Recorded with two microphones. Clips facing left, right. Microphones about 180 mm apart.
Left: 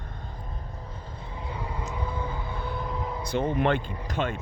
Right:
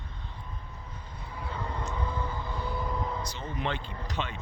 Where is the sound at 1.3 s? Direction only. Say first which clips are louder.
Even; 15° left (ahead or behind).